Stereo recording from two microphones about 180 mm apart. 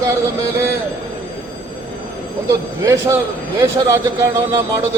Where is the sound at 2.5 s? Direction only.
15° right (ahead or behind).